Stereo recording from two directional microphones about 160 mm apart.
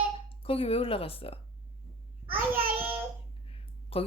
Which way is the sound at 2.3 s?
10° right (ahead or behind).